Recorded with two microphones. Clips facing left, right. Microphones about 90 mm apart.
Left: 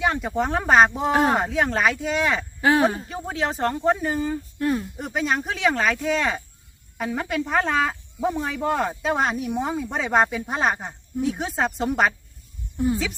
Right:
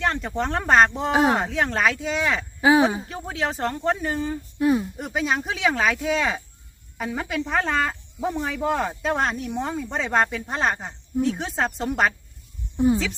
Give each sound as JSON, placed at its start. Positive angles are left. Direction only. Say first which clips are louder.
{"t": 0.0, "sound": "speech", "louder": "left 2 dB", "side_deg": 5}
{"t": 2.6, "sound": "speech", "louder": "right 2 dB", "side_deg": -10}
{"t": 3.1, "sound": "speech", "louder": "left 1 dB", "side_deg": 5}
{"t": 4.6, "sound": "speech", "louder": "right 4 dB", "side_deg": -15}
{"t": 4.9, "sound": "speech", "louder": "even", "side_deg": 0}
{"t": 12.7, "sound": "speech", "louder": "right 4 dB", "side_deg": -25}